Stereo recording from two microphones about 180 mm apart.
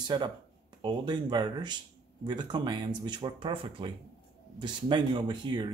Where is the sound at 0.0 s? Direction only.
25° right (ahead or behind).